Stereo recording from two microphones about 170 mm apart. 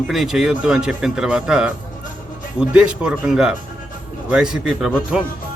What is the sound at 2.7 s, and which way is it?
Speech, 5° right (ahead or behind).